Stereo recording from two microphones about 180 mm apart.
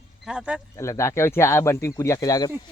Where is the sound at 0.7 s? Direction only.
15° left (ahead or behind).